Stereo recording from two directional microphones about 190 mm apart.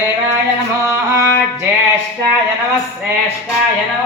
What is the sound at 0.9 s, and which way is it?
Speech, 15° right (ahead or behind).